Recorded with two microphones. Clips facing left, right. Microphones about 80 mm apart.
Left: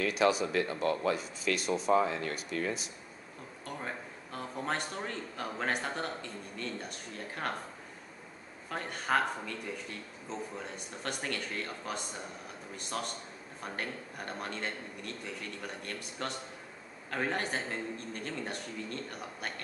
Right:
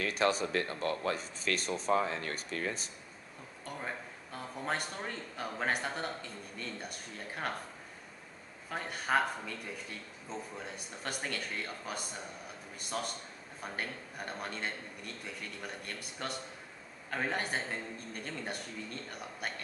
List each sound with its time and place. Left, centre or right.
0.3 s speech: right
0.7 s speech: left
1.0 s speech: right
3.6 s a man's voice: centre
8.6 s a woman's voice: centre
10.6 s a woman's voice: centre